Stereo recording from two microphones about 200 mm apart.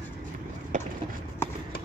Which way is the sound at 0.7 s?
40° right (ahead or behind).